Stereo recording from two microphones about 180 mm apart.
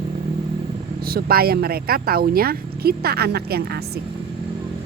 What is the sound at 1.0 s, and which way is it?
Speech, 55° right (ahead or behind).